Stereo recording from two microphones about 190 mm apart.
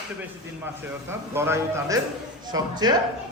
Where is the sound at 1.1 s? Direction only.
10° right (ahead or behind).